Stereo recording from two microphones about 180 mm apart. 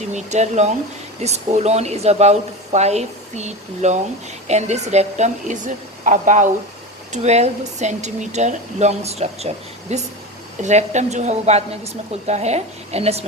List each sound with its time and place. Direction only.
0.1 s speech: 40° right (ahead or behind)